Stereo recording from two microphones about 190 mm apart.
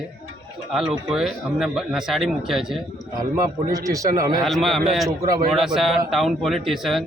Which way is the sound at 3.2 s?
20° right (ahead or behind).